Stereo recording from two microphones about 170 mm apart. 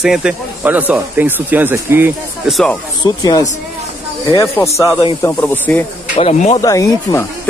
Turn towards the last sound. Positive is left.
turn(degrees=20)  # may be behind; listen again after turning